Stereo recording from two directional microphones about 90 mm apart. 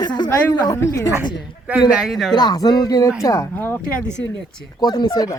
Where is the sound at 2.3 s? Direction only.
50° left (ahead or behind).